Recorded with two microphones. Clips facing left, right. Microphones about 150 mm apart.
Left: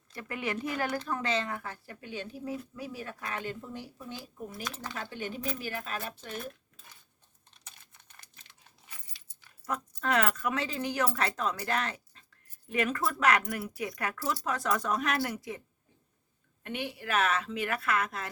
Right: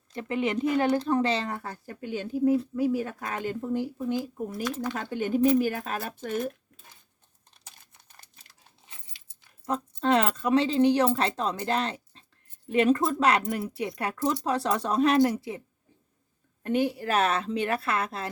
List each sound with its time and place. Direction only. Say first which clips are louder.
0.1 s speech: right 7 dB; 25° right (ahead or behind); by 6.5 s 45° right (ahead or behind)
8.9 s speech: left 1 dB; 25° right (ahead or behind)
16.6 s speech: right 10 dB; 40° right (ahead or behind)